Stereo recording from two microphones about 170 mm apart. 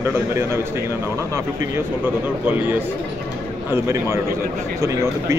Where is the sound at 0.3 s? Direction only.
15° right (ahead or behind).